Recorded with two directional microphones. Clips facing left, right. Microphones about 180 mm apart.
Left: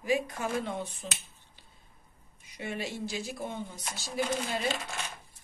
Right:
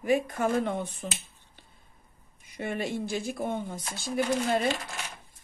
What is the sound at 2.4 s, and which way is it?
Speech, 55° right (ahead or behind).